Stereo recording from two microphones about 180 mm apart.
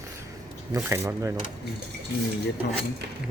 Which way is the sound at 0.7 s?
15° right (ahead or behind).